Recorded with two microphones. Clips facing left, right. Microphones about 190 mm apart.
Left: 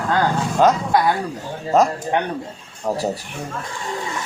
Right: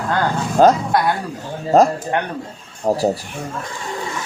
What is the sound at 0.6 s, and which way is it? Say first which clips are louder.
Speech: right 3 dB; 35° right (ahead or behind).